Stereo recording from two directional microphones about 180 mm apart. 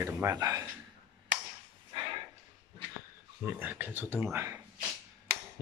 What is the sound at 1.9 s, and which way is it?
Dog, 30° right (ahead or behind).